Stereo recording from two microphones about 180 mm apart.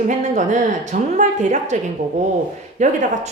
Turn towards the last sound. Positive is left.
turn(degrees=-40)  # may be behind; listen again after turning